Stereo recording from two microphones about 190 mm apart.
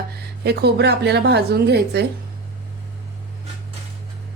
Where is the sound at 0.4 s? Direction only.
60° right (ahead or behind).